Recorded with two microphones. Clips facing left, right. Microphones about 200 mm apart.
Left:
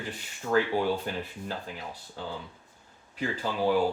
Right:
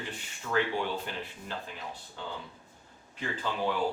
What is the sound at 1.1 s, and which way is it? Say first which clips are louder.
Speech: left 5 dB; 45° left (ahead or behind).